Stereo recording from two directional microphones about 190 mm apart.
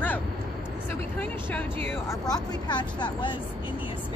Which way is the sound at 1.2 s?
10° left (ahead or behind).